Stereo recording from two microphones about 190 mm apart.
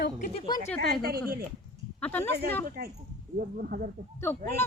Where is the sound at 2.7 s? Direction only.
50° right (ahead or behind).